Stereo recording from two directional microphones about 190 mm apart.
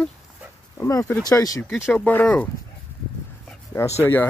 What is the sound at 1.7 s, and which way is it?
Speech, 5° left (ahead or behind).